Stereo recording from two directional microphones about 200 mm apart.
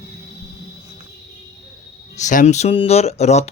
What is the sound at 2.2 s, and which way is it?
Speech, 40° left (ahead or behind).